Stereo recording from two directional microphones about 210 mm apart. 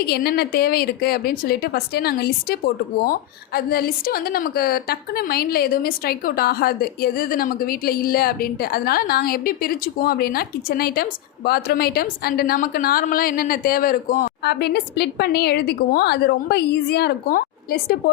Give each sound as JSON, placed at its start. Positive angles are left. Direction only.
{"t": 0.0, "sound": "a woman's voice", "side_deg": 50}